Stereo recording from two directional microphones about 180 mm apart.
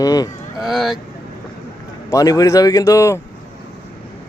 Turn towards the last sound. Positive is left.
turn(degrees=15)  # may be behind; listen again after turning